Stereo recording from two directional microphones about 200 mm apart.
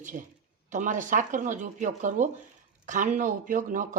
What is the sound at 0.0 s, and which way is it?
Speech, 40° right (ahead or behind).